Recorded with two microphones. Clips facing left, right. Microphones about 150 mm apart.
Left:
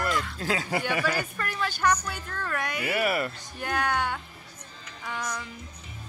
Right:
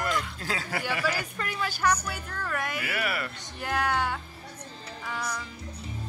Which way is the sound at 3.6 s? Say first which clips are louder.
Even; 5° right (ahead or behind).